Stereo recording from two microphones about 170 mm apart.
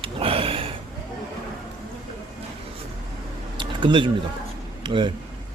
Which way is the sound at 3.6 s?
30° right (ahead or behind).